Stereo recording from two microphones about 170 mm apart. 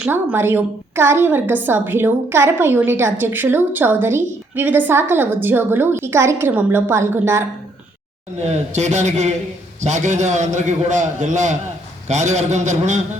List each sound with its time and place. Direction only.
0.0 s a woman's voice: 10° right (ahead or behind)
8.4 s a man's voice: 40° right (ahead or behind)